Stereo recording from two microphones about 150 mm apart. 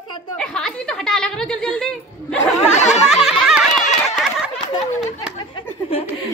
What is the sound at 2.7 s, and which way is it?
Speech, 50° left (ahead or behind).